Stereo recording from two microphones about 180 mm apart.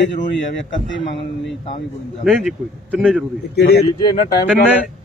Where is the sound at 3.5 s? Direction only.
65° left (ahead or behind).